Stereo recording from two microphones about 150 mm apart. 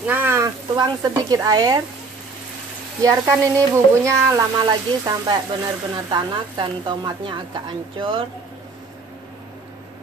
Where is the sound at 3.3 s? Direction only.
20° right (ahead or behind).